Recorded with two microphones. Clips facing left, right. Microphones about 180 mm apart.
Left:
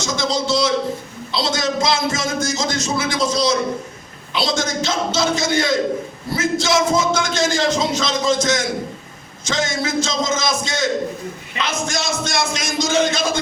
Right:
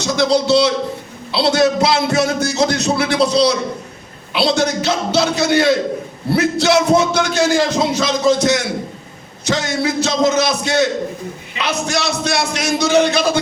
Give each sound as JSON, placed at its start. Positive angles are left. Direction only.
{"t": 0.0, "sound": "music", "side_deg": -65}
{"t": 7.5, "sound": "speech", "side_deg": -10}
{"t": 8.3, "sound": "music", "side_deg": -65}